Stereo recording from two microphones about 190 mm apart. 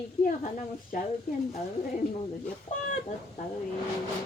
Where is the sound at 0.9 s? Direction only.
45° left (ahead or behind).